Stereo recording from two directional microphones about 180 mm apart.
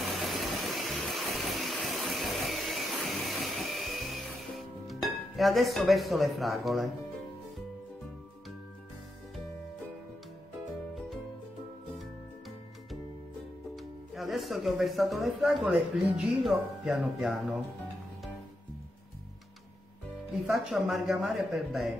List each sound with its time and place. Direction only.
0.0 s vehicle: centre (ahead or behind)
10.7 s music: centre (ahead or behind)
13.7 s speech: centre (ahead or behind)
20.4 s speech: centre (ahead or behind)